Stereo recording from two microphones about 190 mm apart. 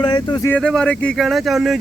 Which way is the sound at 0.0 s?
25° left (ahead or behind).